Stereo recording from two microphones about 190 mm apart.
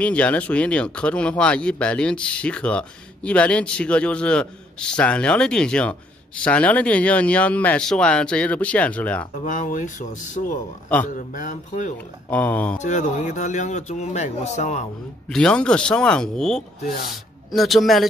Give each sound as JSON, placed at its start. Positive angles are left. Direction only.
{"t": 0.0, "sound": "speech", "side_deg": 5}
{"t": 9.4, "sound": "speech", "side_deg": 40}
{"t": 12.3, "sound": "speech", "side_deg": 10}
{"t": 12.7, "sound": "speech", "side_deg": 40}
{"t": 15.2, "sound": "speech", "side_deg": 5}